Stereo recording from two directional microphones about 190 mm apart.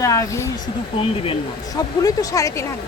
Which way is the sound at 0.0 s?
15° left (ahead or behind).